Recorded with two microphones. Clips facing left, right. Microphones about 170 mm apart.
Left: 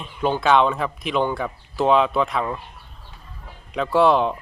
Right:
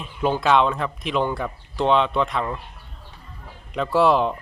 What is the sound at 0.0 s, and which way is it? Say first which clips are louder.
Speech: even; 5° right (ahead or behind).